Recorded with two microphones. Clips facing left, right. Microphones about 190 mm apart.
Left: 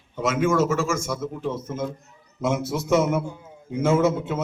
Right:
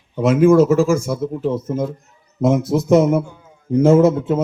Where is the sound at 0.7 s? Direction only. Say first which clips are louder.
Right 9 dB; 35° right (ahead or behind).